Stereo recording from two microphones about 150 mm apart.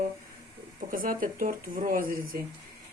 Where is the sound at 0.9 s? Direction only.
70° right (ahead or behind).